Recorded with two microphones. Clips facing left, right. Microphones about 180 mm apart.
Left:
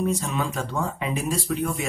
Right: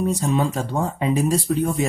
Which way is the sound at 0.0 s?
35° right (ahead or behind).